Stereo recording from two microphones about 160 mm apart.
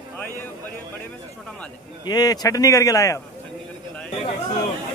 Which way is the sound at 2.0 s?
25° left (ahead or behind).